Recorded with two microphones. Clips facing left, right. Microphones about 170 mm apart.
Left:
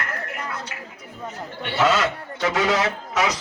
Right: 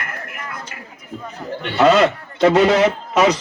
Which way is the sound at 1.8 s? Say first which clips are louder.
Right 7 dB; 75° right (ahead or behind).